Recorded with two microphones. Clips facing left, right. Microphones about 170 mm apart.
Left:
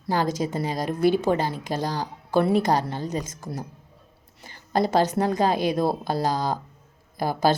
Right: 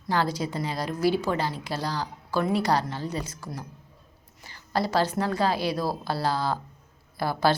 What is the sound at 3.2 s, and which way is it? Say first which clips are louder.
Speech: left 3 dB; 45° left (ahead or behind).